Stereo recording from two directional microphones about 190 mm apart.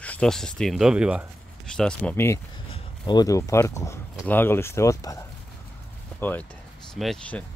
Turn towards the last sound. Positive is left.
turn(degrees=5)  # may be behind; listen again after turning